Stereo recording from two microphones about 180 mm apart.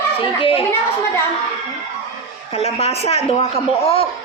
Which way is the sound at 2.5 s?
35° left (ahead or behind).